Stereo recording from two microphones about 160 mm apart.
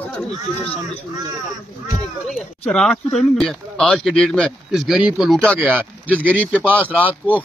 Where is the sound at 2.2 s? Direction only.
Centre (ahead or behind).